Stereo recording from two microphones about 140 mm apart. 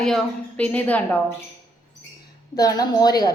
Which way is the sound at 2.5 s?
30° left (ahead or behind).